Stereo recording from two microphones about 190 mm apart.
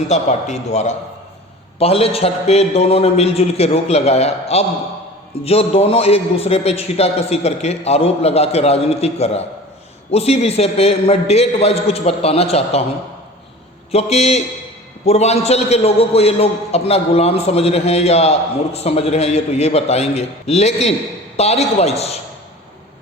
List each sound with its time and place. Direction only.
0.1 s a man's voice: 35° left (ahead or behind)
13.9 s a man's voice: 35° left (ahead or behind)